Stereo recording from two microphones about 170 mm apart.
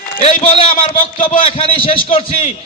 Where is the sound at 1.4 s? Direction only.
35° left (ahead or behind).